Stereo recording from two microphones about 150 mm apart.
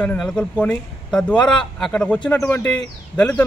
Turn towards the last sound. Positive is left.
turn(degrees=5)  # may be behind; listen again after turning